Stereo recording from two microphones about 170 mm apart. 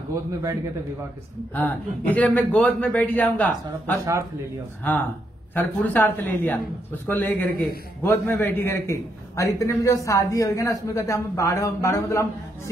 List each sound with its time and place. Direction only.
0.1 s a man's voice: 20° right (ahead or behind)
1.5 s a man's voice: 10° left (ahead or behind)
5.5 s a man's voice: 10° left (ahead or behind)